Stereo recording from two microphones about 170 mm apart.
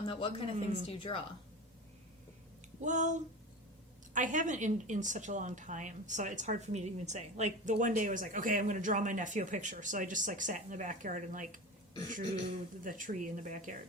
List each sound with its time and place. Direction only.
0.0 s speech: 35° left (ahead or behind)
0.5 s a woman's voice: 45° right (ahead or behind)
0.9 s speech: 30° left (ahead or behind)
2.8 s a woman's voice: 45° right (ahead or behind)
12.8 s a woman's voice: 50° right (ahead or behind)